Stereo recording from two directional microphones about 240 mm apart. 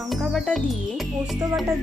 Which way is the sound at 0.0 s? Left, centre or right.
Centre.